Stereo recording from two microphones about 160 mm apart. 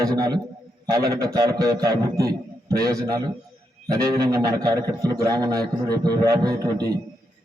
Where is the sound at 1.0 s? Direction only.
75° right (ahead or behind).